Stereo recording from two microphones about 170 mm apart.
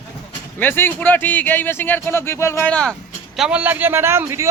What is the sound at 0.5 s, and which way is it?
Speech, 10° left (ahead or behind).